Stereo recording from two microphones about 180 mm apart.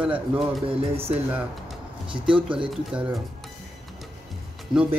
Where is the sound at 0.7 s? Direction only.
30° right (ahead or behind).